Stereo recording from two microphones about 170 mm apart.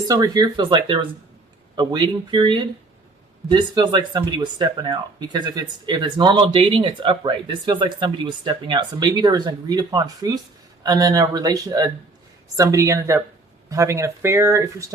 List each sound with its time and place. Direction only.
0.1 s speech: 25° right (ahead or behind)